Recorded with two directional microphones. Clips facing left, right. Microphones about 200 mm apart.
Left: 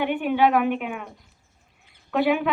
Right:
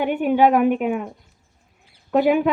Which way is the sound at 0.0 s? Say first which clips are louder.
Right 4 dB; 45° right (ahead or behind).